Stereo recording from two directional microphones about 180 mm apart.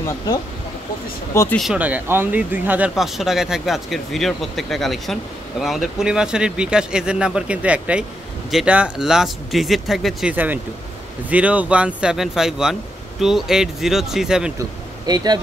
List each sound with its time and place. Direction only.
1.3 s speech: 15° left (ahead or behind)
1.6 s speech: 5° right (ahead or behind)
14.6 s speech: 20° right (ahead or behind)